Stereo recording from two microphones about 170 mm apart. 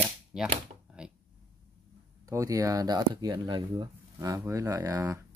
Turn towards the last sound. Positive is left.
turn(degrees=-20)  # may be behind; listen again after turning